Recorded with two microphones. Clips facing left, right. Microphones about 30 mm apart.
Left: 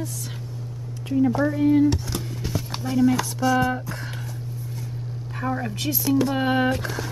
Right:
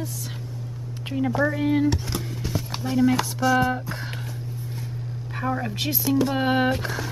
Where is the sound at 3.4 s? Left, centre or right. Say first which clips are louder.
Even; centre.